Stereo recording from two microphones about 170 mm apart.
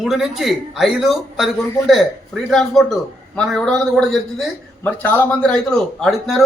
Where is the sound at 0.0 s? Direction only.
Centre (ahead or behind).